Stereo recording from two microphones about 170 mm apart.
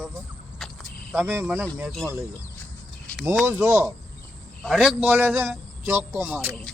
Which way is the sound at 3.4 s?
15° right (ahead or behind).